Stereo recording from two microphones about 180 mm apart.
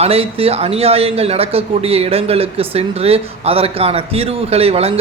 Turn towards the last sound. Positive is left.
turn(degrees=-35)  # may be behind; listen again after turning